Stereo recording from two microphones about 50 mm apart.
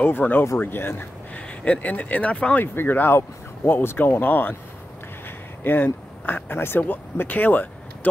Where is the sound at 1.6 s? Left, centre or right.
Left.